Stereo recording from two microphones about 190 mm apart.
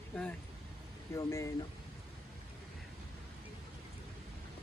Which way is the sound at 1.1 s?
15° left (ahead or behind).